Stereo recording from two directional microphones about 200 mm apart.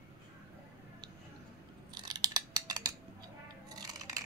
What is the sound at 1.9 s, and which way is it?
Scissors, 20° right (ahead or behind).